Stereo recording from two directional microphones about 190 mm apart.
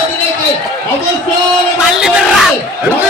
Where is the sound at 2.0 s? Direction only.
5° right (ahead or behind).